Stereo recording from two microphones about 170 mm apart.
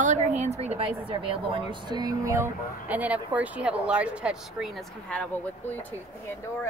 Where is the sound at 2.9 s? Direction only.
10° right (ahead or behind).